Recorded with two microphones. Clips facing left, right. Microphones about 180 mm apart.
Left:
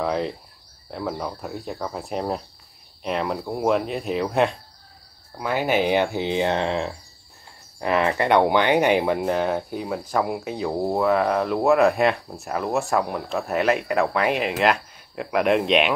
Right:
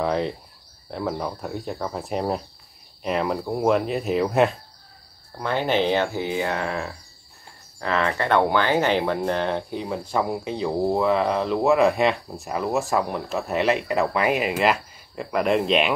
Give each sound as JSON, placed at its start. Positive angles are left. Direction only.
{"t": 0.0, "sound": "cricket", "side_deg": 0}
{"t": 0.8, "sound": "speech", "side_deg": 0}